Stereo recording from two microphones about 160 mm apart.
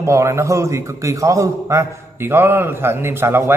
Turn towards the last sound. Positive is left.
turn(degrees=-15)  # may be behind; listen again after turning